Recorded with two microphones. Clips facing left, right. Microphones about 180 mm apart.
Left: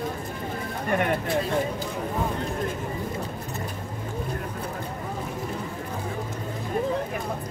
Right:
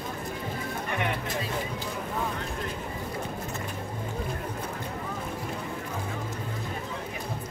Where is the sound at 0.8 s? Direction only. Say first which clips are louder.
Left 7 dB; 45° left (ahead or behind).